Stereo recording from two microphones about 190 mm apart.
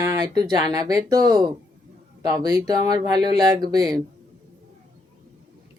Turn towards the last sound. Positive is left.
turn(degrees=-20)  # may be behind; listen again after turning